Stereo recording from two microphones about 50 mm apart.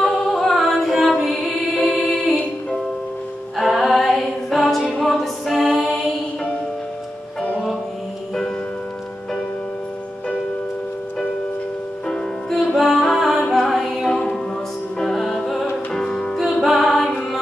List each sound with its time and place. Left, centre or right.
0.0 s music: centre
3.5 s a capella: centre
12.4 s music: centre
16.3 s music: centre